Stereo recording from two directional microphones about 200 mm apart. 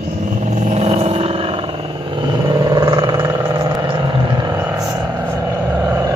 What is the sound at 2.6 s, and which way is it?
Vehicle, 20° right (ahead or behind).